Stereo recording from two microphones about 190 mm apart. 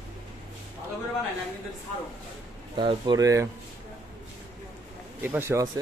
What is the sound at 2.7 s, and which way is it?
Speech, 25° right (ahead or behind).